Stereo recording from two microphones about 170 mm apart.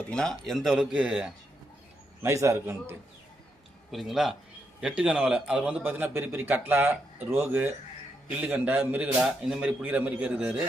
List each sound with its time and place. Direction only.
0.0 s speech: 5° left (ahead or behind)
2.2 s a man's voice: 15° right (ahead or behind)
3.9 s a man's voice: centre (ahead or behind)